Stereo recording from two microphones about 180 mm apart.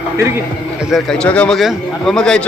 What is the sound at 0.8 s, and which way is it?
A man's voice, centre (ahead or behind).